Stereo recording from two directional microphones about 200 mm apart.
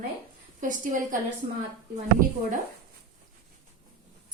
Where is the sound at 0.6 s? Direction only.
40° right (ahead or behind).